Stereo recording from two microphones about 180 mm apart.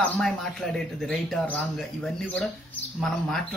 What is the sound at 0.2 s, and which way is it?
Speech, centre (ahead or behind).